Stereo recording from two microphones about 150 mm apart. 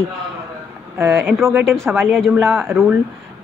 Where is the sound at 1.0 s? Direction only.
15° right (ahead or behind).